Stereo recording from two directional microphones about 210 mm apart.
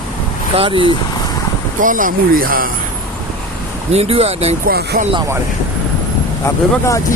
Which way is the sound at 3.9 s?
30° right (ahead or behind).